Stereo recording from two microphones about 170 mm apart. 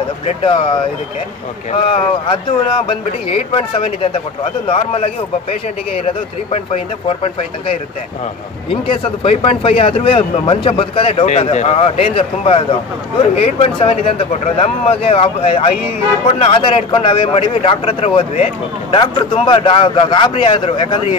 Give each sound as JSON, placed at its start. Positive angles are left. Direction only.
{"t": 0.4, "sound": "speech", "side_deg": 30}
{"t": 8.6, "sound": "speech", "side_deg": 30}